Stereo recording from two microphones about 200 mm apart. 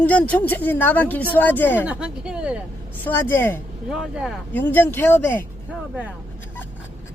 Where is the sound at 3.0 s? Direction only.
10° left (ahead or behind).